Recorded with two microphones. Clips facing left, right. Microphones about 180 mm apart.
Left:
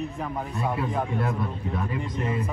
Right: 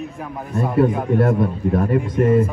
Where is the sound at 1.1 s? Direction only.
60° right (ahead or behind).